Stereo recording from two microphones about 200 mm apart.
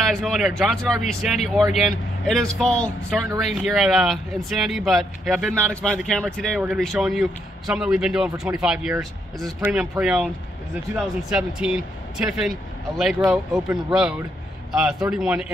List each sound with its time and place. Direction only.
0.1 s speech: centre (ahead or behind)